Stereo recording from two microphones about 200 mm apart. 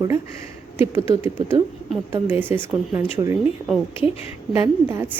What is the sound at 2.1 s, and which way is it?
Speech, 10° right (ahead or behind).